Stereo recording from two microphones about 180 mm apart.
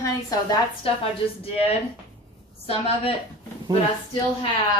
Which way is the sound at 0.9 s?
30° left (ahead or behind).